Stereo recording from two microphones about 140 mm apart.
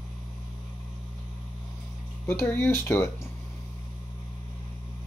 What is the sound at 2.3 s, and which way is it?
Speech, 15° left (ahead or behind).